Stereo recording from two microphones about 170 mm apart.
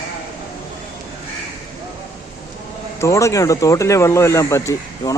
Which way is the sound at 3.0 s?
15° left (ahead or behind).